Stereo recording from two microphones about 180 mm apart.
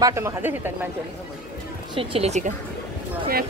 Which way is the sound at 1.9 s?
30° right (ahead or behind).